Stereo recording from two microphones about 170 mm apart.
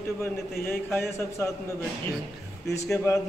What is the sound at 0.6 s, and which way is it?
Speech, 15° left (ahead or behind).